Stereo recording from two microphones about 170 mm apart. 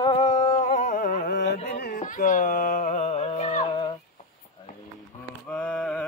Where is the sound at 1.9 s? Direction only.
50° left (ahead or behind).